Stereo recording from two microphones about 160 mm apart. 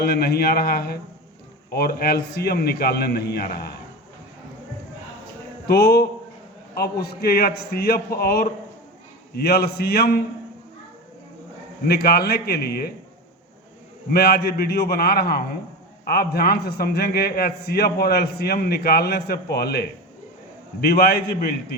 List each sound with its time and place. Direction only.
0.0 s a man's voice: 75° left (ahead or behind)
5.6 s a man's voice: 80° left
11.9 s a man's voice: 75° left (ahead or behind)
14.1 s a man's voice: 80° left